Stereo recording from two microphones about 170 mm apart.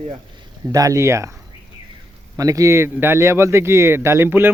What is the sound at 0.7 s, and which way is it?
Speech, 20° right (ahead or behind).